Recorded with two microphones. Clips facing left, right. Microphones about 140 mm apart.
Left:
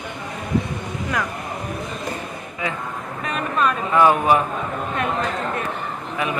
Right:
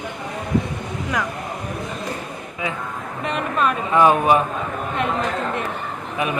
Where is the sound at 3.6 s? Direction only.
20° right (ahead or behind).